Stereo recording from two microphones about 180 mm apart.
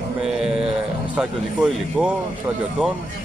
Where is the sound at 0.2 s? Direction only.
5° right (ahead or behind).